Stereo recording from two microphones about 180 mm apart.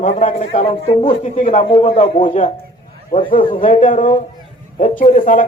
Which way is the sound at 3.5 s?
45° left (ahead or behind).